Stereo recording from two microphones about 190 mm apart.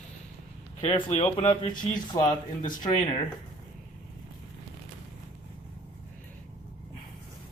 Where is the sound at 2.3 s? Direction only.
40° left (ahead or behind).